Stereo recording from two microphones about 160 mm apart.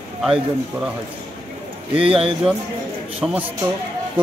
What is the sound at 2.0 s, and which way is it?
Speech, 35° right (ahead or behind).